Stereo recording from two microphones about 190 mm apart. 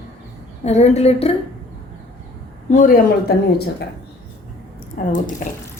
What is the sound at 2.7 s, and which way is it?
Speech, 45° left (ahead or behind).